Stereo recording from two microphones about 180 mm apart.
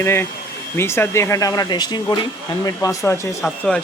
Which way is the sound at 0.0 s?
15° left (ahead or behind).